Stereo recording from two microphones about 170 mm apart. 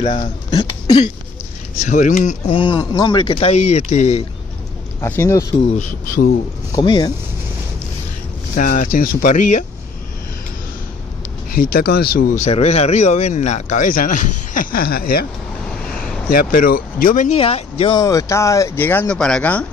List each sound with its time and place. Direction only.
0.5 s a sound: 25° left (ahead or behind)
1.8 s speech: 45° left (ahead or behind)
5.0 s speech: 15° left (ahead or behind)
6.0 s speech: 60° left (ahead or behind)
6.7 s speech: 25° left (ahead or behind)
8.5 s speech: 50° left (ahead or behind)
11.5 s speech: 60° left (ahead or behind)
12.4 s speech: 40° left (ahead or behind); by 15.2 s 60° left (ahead or behind)
16.3 s speech: 55° left (ahead or behind)
17.4 s speech: 35° left (ahead or behind); by 19.6 s 5° left (ahead or behind)